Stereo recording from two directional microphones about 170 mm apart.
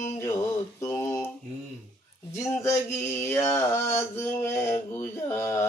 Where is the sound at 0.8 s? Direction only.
15° left (ahead or behind).